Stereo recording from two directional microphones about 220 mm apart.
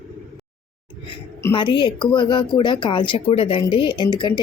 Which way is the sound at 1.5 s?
20° left (ahead or behind).